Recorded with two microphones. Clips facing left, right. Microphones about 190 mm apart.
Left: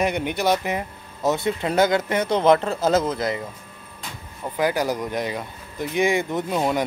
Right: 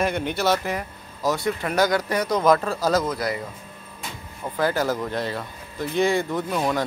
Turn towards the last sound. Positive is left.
turn(degrees=20)  # may be behind; listen again after turning